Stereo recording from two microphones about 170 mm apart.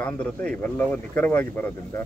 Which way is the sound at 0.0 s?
10° left (ahead or behind).